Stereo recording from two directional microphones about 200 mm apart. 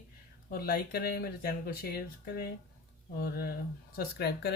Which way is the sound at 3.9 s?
55° left (ahead or behind).